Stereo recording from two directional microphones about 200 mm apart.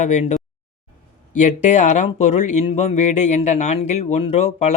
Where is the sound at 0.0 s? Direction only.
35° left (ahead or behind).